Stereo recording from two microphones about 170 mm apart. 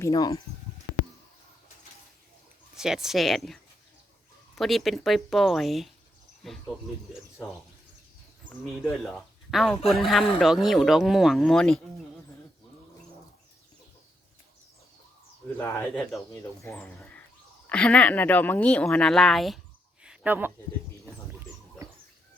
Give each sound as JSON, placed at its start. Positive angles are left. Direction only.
{"t": 0.0, "sound": "speech", "side_deg": 20}
{"t": 2.7, "sound": "speech", "side_deg": -5}
{"t": 8.6, "sound": "speech", "side_deg": 0}
{"t": 15.5, "sound": "speech", "side_deg": 15}
{"t": 20.0, "sound": "a sound", "side_deg": -10}